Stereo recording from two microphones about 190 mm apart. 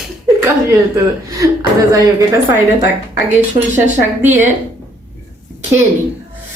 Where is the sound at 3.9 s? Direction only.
40° right (ahead or behind).